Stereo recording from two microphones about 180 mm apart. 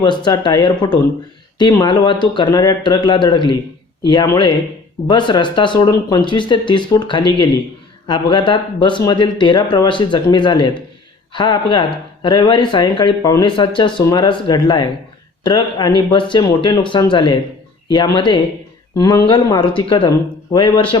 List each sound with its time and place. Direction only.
0.0 s speech: 25° left (ahead or behind)